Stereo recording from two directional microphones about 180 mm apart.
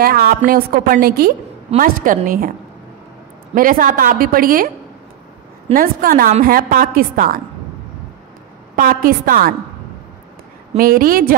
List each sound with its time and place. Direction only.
0.0 s a woman's voice: 55° right (ahead or behind)
3.5 s a woman's voice: 50° right (ahead or behind)
5.8 s a woman's voice: 50° right (ahead or behind)
8.7 s a woman's voice: 50° right (ahead or behind)
10.8 s a woman's voice: 55° right (ahead or behind)